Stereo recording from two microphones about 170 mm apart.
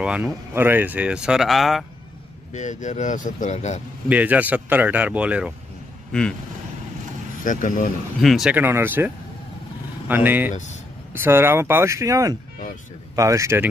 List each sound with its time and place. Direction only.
0.0 s speech: 5° right (ahead or behind)
2.5 s speech: 45° left (ahead or behind)
4.1 s speech: 10° right (ahead or behind)
7.4 s speech: 50° left (ahead or behind)
8.2 s speech: centre (ahead or behind); by 13.7 s 15° right (ahead or behind)